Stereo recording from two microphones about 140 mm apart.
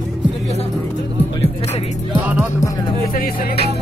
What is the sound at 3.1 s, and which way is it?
Music, 90° left.